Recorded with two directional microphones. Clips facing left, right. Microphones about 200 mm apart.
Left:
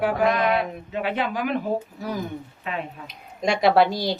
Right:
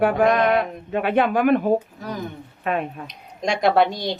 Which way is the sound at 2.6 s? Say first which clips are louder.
Right 9 dB; 55° right (ahead or behind).